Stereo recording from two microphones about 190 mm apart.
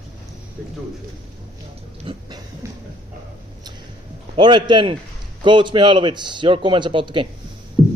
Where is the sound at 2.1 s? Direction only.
30° right (ahead or behind).